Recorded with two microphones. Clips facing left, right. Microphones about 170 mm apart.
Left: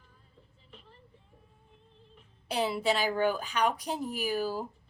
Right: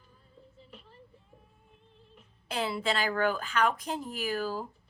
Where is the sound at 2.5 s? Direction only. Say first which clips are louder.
Left 2 dB; 10° left (ahead or behind).